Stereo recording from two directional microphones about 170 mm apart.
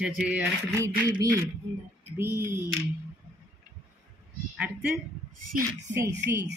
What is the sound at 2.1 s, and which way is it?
Music, 15° right (ahead or behind).